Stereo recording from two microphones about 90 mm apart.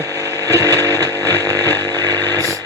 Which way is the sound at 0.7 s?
25° left (ahead or behind).